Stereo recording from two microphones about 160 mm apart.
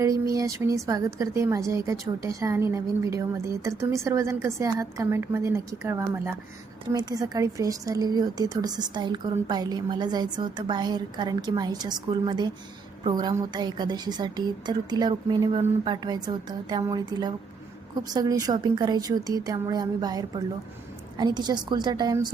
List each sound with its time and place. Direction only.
0.0 s a woman's voice: 20° right (ahead or behind)